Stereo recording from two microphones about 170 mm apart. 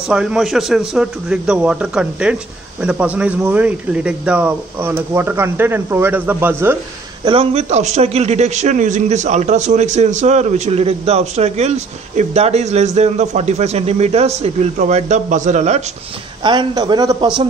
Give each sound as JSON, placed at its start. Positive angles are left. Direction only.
{"t": 0.1, "sound": "a man's voice", "side_deg": -5}
{"t": 7.2, "sound": "a man's voice", "side_deg": -35}
{"t": 16.4, "sound": "a man's voice", "side_deg": -25}